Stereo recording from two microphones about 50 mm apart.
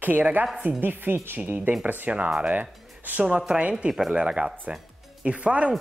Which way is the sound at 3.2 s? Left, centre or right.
Right.